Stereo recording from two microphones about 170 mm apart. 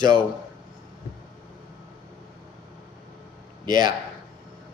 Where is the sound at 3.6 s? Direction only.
25° right (ahead or behind).